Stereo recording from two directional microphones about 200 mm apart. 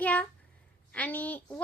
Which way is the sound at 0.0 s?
5° left (ahead or behind).